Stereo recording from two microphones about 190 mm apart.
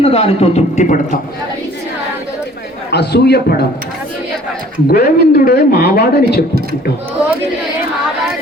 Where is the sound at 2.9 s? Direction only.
60° left (ahead or behind).